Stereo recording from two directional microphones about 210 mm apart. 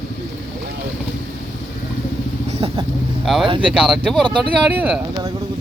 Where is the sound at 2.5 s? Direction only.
30° right (ahead or behind).